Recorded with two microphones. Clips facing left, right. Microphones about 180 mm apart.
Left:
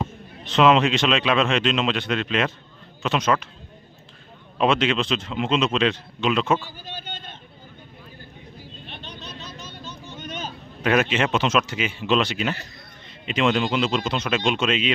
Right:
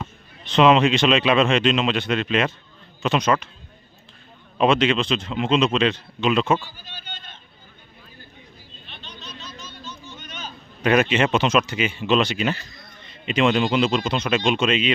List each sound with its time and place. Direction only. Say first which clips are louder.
0.4 s speech: right 1 dB; centre (ahead or behind)
4.5 s speech: right 2 dB; centre (ahead or behind)
6.7 s speech: left 6 dB; 50° left (ahead or behind)
8.9 s vehicle: left 1 dB; 55° left (ahead or behind)
10.2 s a sound: left 5 dB; 50° left (ahead or behind)
10.8 s speech: right 2 dB; centre (ahead or behind)